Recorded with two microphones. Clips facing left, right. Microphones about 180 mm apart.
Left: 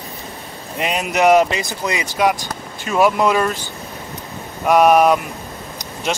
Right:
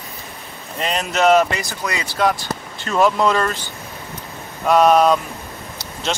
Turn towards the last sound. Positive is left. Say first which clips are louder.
# left 1 dB
turn(degrees=10)  # may be behind; listen again after turning